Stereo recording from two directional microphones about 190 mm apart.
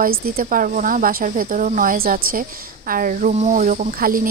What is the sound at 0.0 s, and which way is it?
Speech, 50° right (ahead or behind).